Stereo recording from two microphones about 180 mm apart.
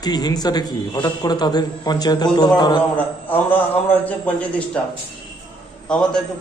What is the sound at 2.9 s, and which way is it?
Speech, 10° left (ahead or behind).